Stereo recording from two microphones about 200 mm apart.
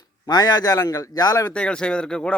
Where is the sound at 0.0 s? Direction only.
20° left (ahead or behind).